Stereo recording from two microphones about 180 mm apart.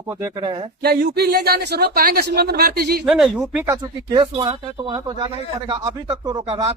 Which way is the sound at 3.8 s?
25° right (ahead or behind).